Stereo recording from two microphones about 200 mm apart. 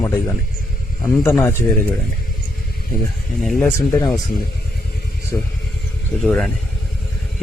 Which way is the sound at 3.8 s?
15° left (ahead or behind).